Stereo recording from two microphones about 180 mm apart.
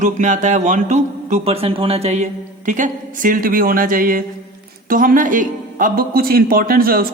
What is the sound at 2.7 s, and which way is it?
A man's voice, 45° right (ahead or behind).